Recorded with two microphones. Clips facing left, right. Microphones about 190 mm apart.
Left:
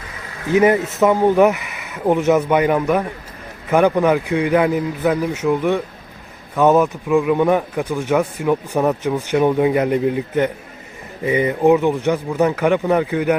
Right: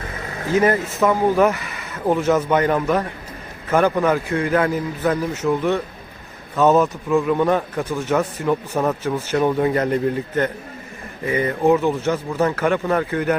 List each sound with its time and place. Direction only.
0.4 s speech: 20° left (ahead or behind)